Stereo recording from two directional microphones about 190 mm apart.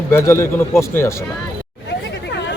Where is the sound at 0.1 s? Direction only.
15° left (ahead or behind).